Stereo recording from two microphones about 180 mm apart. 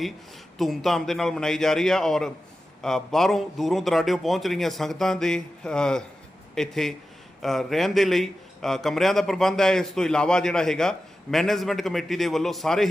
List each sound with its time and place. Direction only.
0.6 s a man's voice: centre (ahead or behind)